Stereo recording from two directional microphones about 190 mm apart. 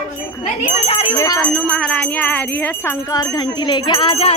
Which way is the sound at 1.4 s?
5° left (ahead or behind).